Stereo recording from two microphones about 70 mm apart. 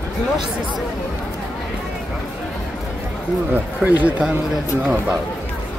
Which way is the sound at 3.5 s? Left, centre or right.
Right.